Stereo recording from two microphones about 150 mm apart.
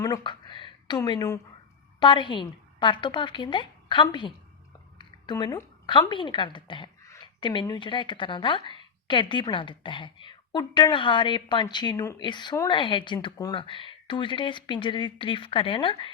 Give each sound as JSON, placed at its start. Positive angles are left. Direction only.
{"t": 0.0, "sound": "a woman's voice", "side_deg": 25}